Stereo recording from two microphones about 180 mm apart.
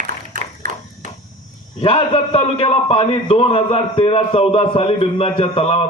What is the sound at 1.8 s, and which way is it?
A man's voice, 30° left (ahead or behind).